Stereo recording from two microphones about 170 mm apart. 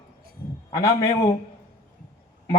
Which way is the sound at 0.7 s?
20° left (ahead or behind).